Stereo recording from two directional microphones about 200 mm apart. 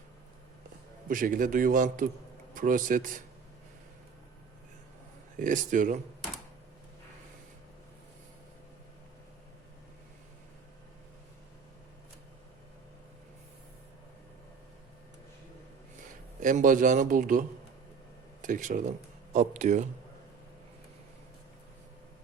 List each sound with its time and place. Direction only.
1.0 s a man's voice: 45° right (ahead or behind)
5.4 s speech: 40° right (ahead or behind)
16.4 s speech: 40° right (ahead or behind)
18.4 s speech: 40° right (ahead or behind)